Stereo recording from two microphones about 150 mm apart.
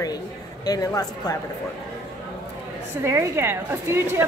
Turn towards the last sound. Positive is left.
turn(degrees=-15)  # may be behind; listen again after turning